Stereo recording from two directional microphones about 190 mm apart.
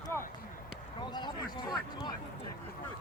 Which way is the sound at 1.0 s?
25° left (ahead or behind).